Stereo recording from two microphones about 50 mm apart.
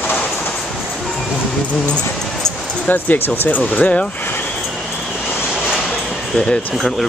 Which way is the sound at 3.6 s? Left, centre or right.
Left.